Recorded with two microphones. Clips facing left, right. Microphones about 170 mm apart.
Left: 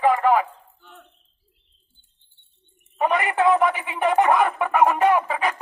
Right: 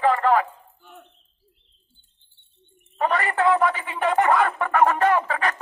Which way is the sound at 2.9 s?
15° left (ahead or behind).